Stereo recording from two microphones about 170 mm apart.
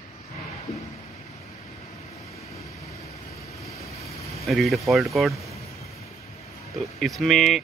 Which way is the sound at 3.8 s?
40° left (ahead or behind).